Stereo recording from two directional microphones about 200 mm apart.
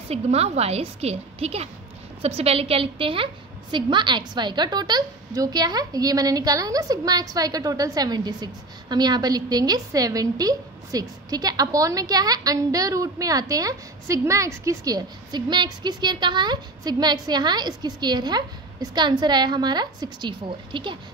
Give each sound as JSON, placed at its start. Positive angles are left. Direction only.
{"t": 0.1, "sound": "a woman's voice", "side_deg": -30}